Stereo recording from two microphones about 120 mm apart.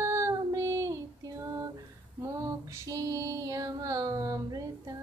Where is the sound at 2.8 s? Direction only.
30° right (ahead or behind).